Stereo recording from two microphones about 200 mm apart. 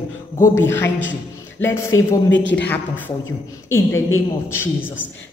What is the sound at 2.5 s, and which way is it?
Speech, 10° left (ahead or behind).